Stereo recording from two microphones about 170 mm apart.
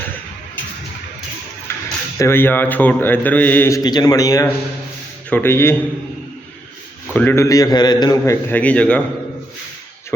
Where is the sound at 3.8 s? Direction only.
25° left (ahead or behind).